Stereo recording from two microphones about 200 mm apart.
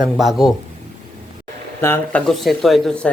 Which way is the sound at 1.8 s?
10° left (ahead or behind).